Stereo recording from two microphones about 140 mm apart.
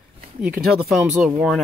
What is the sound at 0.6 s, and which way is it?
Speech, 5° right (ahead or behind).